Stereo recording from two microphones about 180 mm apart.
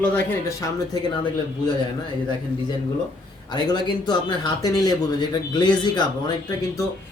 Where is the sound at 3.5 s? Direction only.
25° left (ahead or behind).